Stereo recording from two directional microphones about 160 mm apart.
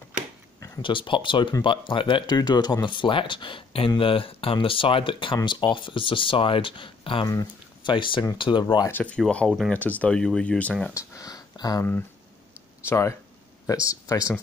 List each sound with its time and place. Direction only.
0.6 s speech: 30° left (ahead or behind)
8.8 s speech: 10° left (ahead or behind)
11.0 s speech: 20° left (ahead or behind)
12.8 s speech: 15° left (ahead or behind)